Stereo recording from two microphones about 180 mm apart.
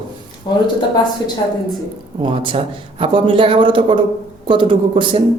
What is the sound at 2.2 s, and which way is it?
A man's voice, 30° right (ahead or behind).